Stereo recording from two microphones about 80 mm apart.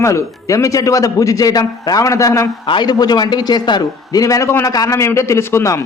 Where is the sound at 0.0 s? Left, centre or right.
Left.